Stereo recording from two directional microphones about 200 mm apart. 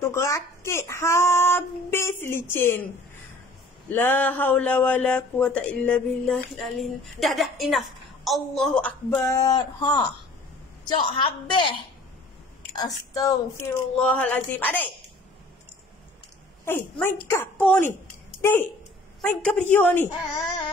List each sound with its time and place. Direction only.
0.0 s a sound: 15° left (ahead or behind)
3.9 s a man's voice: 10° left (ahead or behind)
9.1 s speech: 15° left (ahead or behind)
11.1 s speech: 25° left (ahead or behind)
12.7 s a man's voice: 20° left (ahead or behind)
13.9 s a man's voice: 5° left (ahead or behind)
16.6 s a man's voice: 10° left (ahead or behind)